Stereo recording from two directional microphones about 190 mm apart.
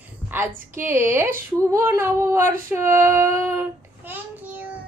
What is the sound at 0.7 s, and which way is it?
A woman's voice, 10° right (ahead or behind).